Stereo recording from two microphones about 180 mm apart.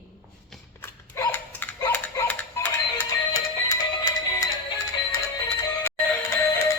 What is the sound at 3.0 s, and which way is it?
Music, 20° left (ahead or behind).